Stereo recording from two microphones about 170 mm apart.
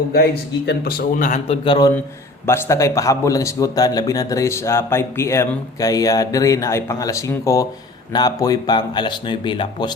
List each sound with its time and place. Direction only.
0.1 s a man's voice: 70° left (ahead or behind); by 1.4 s 50° left (ahead or behind)
1.5 s a man's voice: 30° left (ahead or behind)
2.5 s a man's voice: 15° left (ahead or behind)